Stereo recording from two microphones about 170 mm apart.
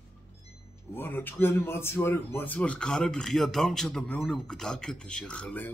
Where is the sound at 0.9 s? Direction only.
10° left (ahead or behind).